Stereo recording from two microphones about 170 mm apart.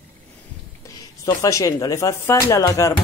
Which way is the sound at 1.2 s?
20° left (ahead or behind).